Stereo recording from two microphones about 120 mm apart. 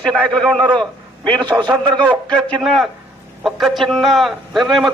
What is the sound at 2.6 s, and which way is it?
A man's voice, centre (ahead or behind).